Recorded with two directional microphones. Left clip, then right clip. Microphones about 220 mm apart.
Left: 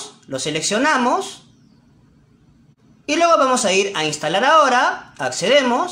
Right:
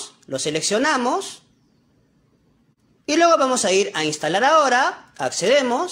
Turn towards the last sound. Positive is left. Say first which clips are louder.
# left 2 dB
turn(degrees=-30)  # may be behind; listen again after turning